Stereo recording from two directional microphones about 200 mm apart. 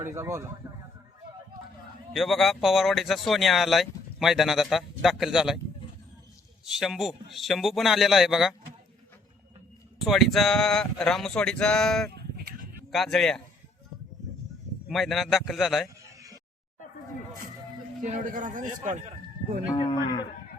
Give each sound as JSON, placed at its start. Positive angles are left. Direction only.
{"t": 0.0, "sound": "speech", "side_deg": -15}
{"t": 2.1, "sound": "speech", "side_deg": 0}
{"t": 6.7, "sound": "speech", "side_deg": 0}
{"t": 10.0, "sound": "speech", "side_deg": 0}
{"t": 14.8, "sound": "speech", "side_deg": 0}
{"t": 18.0, "sound": "speech", "side_deg": -40}
{"t": 19.7, "sound": "speech", "side_deg": 25}